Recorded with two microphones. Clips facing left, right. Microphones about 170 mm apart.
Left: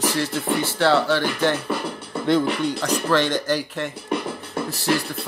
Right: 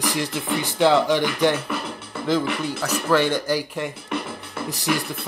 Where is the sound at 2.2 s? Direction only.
5° right (ahead or behind).